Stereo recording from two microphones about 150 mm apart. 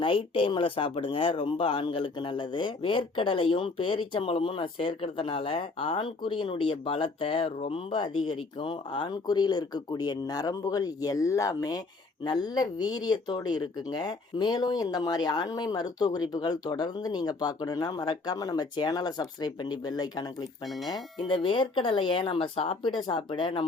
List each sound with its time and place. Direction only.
0.0 s speech: 35° left (ahead or behind)
20.7 s speech: centre (ahead or behind)
21.2 s speech: 35° left (ahead or behind)